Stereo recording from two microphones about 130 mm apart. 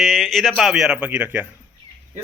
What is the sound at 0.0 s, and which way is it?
A man's voice, centre (ahead or behind).